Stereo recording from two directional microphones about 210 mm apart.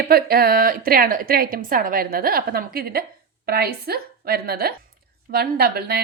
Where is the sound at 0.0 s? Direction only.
45° right (ahead or behind).